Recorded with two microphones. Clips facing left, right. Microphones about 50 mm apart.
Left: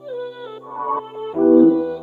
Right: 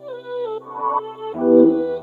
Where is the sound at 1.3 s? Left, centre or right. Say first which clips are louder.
Left 1 dB; centre.